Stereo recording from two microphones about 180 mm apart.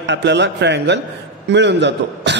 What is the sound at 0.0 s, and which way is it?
A man's voice, 75° right (ahead or behind).